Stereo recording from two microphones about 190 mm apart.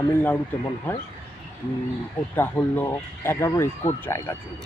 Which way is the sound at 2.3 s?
10° left (ahead or behind).